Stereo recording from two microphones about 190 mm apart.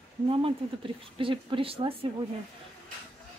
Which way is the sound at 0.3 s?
30° right (ahead or behind).